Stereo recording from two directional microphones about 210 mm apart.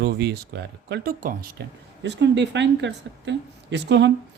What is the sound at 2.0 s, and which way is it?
A woman's voice, 55° right (ahead or behind).